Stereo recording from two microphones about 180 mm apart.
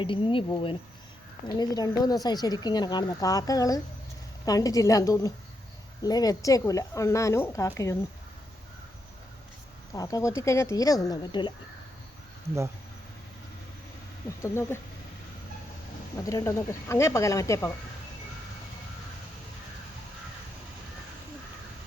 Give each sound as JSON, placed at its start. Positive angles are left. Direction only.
{"t": 0.0, "sound": "a woman's voice", "side_deg": 30}
{"t": 9.9, "sound": "a woman's voice", "side_deg": 20}
{"t": 14.4, "sound": "speech", "side_deg": 15}
{"t": 16.1, "sound": "speech", "side_deg": 15}